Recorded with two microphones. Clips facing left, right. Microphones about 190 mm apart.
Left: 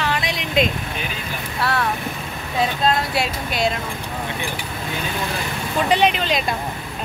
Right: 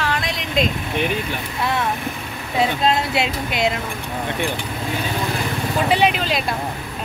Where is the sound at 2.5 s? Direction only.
20° right (ahead or behind).